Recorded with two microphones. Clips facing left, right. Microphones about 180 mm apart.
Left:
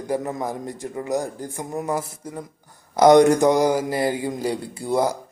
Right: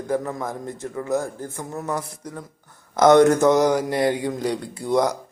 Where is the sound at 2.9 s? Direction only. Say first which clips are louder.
Left 1 dB; 15° left (ahead or behind).